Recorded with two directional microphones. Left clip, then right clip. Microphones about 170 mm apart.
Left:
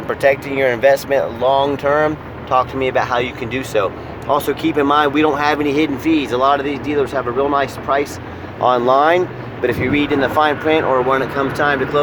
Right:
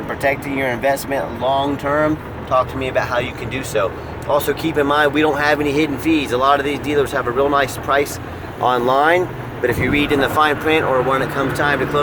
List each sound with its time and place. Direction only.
0.2 s speech: 45° left (ahead or behind); by 11.8 s 20° left (ahead or behind)